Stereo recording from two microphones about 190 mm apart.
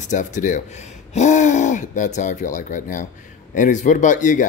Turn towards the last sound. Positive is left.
turn(degrees=40)  # may be behind; listen again after turning